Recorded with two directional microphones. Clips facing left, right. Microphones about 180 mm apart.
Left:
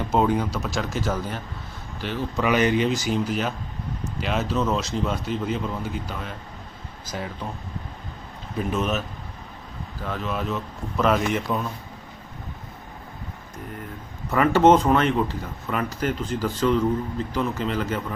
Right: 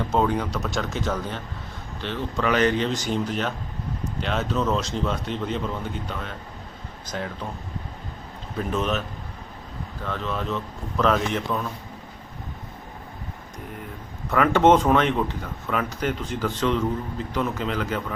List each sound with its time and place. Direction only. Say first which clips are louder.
0.1 s a man's voice: left 3 dB; 10° left (ahead or behind)
8.5 s a man's voice: even; 5° left (ahead or behind)
10.1 s speech: left 1 dB; 5° left (ahead or behind)
14.3 s a man's voice: left 1 dB; centre (ahead or behind)